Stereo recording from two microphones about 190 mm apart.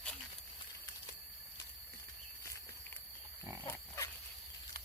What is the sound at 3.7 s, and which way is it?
Pig, 15° left (ahead or behind).